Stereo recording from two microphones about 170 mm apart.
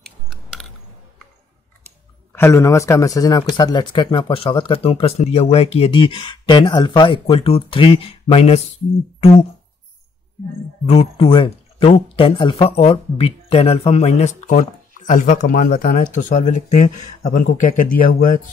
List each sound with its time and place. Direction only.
0.0 s gears: 5° left (ahead or behind)
2.3 s speech: 15° left (ahead or behind); by 8.7 s 40° left (ahead or behind)
10.9 s speech: 35° left (ahead or behind); by 18.4 s 55° left (ahead or behind)